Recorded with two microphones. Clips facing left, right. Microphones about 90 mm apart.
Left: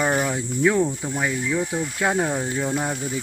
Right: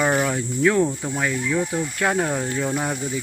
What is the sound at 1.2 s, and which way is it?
Speech, 10° left (ahead or behind).